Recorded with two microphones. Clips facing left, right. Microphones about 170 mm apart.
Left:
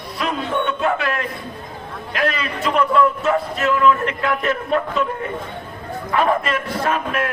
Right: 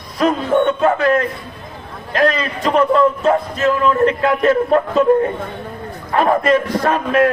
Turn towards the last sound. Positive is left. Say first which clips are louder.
# right 6 dB
turn(degrees=-40)  # may be behind; listen again after turning